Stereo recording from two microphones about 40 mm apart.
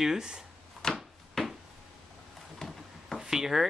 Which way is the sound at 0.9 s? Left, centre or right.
Centre.